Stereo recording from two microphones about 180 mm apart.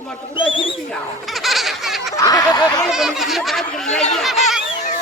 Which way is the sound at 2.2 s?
20° left (ahead or behind).